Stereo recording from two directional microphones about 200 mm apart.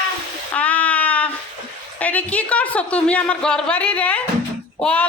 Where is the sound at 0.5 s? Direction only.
5° left (ahead or behind).